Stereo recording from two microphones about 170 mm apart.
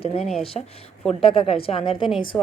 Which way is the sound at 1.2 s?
30° left (ahead or behind).